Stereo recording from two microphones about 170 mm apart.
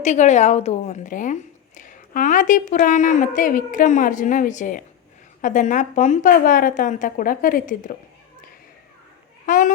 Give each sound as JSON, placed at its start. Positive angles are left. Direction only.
{"t": 0.0, "sound": "speech", "side_deg": 45}
{"t": 9.5, "sound": "a child's voice", "side_deg": 50}